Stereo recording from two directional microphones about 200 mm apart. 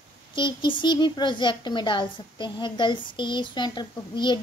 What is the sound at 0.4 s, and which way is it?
Speech, 25° left (ahead or behind).